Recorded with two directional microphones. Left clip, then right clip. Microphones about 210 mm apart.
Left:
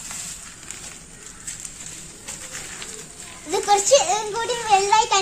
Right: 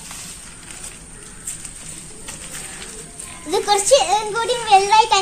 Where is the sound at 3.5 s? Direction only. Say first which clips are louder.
Right 2 dB; 10° right (ahead or behind).